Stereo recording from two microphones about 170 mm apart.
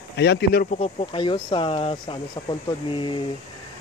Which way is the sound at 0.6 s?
35° left (ahead or behind).